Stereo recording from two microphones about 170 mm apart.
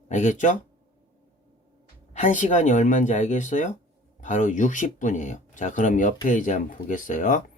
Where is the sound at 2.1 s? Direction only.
45° left (ahead or behind).